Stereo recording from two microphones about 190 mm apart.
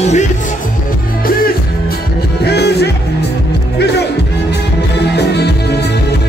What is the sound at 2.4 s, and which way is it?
Music, 60° left (ahead or behind).